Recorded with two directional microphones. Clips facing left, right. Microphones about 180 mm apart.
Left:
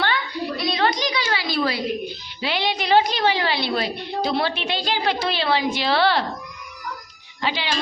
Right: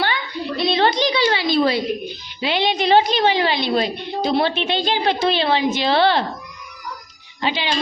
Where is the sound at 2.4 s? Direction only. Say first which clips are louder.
Right 5 dB; 20° right (ahead or behind).